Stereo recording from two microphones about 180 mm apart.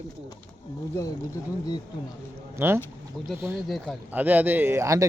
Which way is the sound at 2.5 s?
15° right (ahead or behind).